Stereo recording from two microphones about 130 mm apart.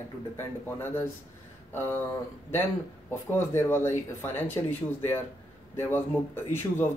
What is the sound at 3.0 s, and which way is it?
Speech, 20° left (ahead or behind).